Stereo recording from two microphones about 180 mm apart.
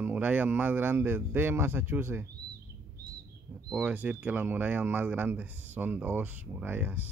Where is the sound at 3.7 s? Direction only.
10° right (ahead or behind).